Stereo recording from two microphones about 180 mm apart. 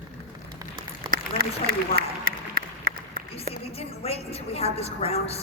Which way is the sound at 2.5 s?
55° right (ahead or behind).